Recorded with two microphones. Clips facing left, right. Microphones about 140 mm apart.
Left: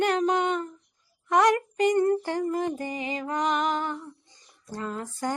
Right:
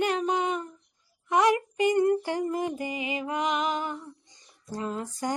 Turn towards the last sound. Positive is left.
turn(degrees=-20)  # may be behind; listen again after turning